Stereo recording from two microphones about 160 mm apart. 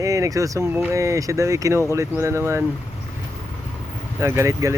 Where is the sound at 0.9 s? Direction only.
20° right (ahead or behind).